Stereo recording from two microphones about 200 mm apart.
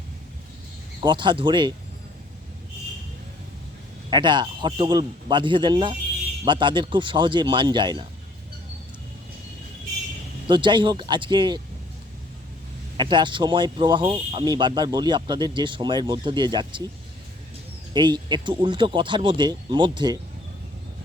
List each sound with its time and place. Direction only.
1.0 s speech: 25° right (ahead or behind)
4.1 s speech: 20° right (ahead or behind)
10.4 s speech: 25° right (ahead or behind)
13.0 s speech: 25° right (ahead or behind)
17.9 s speech: 20° right (ahead or behind)